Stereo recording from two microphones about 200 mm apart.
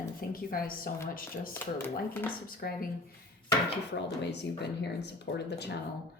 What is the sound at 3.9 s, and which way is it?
Speech, 60° left (ahead or behind).